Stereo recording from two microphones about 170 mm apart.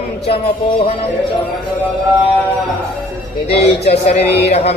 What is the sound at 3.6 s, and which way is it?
Music, 40° left (ahead or behind).